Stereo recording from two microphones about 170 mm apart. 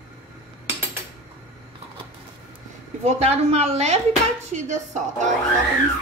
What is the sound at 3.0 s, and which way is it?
A woman's voice, 40° right (ahead or behind).